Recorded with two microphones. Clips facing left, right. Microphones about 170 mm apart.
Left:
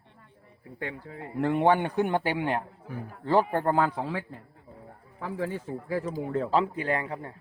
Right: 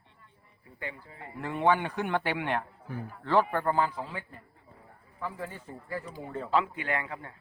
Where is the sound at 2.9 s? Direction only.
5° left (ahead or behind).